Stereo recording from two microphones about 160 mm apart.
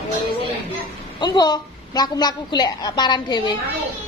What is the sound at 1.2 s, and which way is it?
A woman's voice, 25° left (ahead or behind).